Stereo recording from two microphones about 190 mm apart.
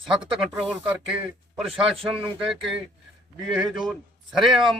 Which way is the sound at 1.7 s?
30° right (ahead or behind).